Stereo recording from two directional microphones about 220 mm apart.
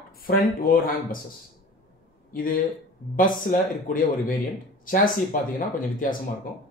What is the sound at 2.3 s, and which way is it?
Speech, 40° left (ahead or behind).